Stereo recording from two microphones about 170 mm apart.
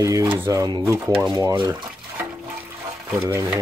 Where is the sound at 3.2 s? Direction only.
15° right (ahead or behind).